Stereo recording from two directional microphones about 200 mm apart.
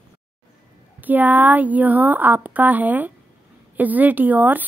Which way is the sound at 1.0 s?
10° right (ahead or behind).